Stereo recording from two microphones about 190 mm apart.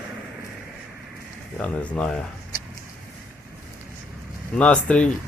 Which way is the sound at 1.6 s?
5° left (ahead or behind).